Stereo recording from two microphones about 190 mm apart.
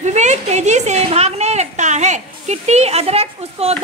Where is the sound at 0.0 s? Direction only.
35° right (ahead or behind).